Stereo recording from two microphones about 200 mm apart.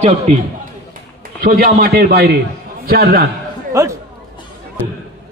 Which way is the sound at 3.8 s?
15° right (ahead or behind).